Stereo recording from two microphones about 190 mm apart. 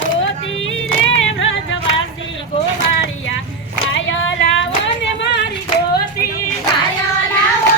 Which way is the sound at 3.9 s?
75° left (ahead or behind).